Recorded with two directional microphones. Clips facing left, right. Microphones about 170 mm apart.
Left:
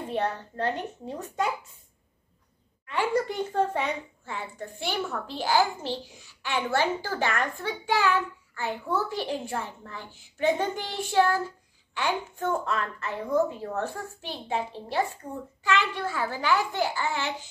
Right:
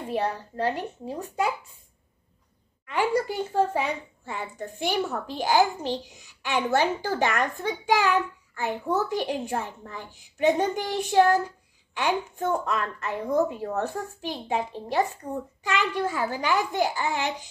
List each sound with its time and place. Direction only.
0.1 s a child's voice: 10° right (ahead or behind)
2.9 s a child's voice: 10° right (ahead or behind)